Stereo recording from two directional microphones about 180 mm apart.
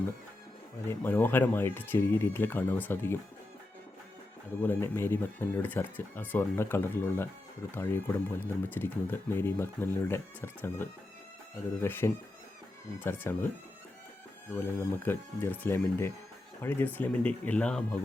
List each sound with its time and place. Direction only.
0.9 s speech: 10° left (ahead or behind)
4.6 s speech: 10° left (ahead or behind)
14.5 s speech: 15° left (ahead or behind)